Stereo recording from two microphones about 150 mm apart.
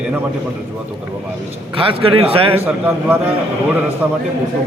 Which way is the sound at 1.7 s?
35° right (ahead or behind).